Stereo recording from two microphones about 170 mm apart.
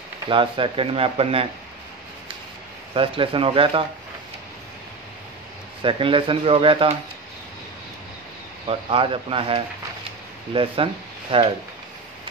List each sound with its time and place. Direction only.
0.3 s speech: 30° right (ahead or behind)
2.9 s speech: 30° right (ahead or behind)
5.8 s speech: 30° right (ahead or behind)
8.6 s speech: 30° right (ahead or behind)